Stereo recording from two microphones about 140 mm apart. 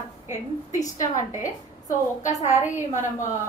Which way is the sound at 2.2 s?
55° left (ahead or behind).